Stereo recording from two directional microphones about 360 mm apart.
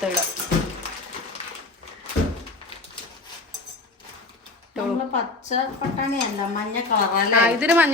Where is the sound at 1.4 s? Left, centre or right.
Centre.